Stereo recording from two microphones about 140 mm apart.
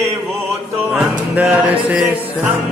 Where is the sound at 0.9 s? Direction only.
10° right (ahead or behind).